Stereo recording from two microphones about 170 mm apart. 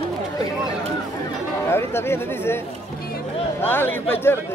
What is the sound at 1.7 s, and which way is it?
Speech, 15° left (ahead or behind).